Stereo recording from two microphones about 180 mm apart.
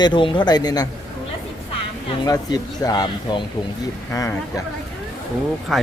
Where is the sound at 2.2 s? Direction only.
20° left (ahead or behind).